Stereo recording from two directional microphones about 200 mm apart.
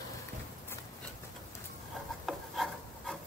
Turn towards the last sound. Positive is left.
turn(degrees=0)  # may be behind; listen again after turning